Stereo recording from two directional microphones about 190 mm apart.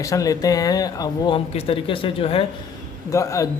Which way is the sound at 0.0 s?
15° left (ahead or behind).